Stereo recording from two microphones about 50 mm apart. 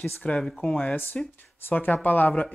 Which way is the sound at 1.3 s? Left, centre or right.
Left.